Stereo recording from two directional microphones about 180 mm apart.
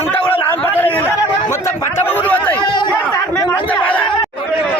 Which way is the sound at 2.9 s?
10° left (ahead or behind).